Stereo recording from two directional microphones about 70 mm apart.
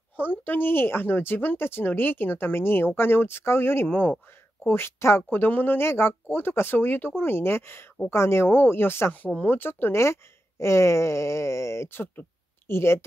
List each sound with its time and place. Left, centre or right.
0.1 s speech: left
9.1 s speech: left